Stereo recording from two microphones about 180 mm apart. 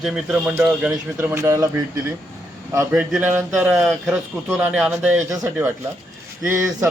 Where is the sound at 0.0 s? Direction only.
Centre (ahead or behind).